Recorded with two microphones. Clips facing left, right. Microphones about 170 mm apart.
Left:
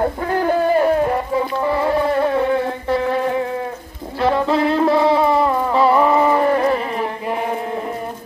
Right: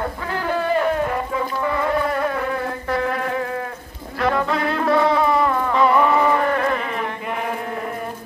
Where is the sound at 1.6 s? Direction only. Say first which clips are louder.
Left 2 dB; 30° left (ahead or behind).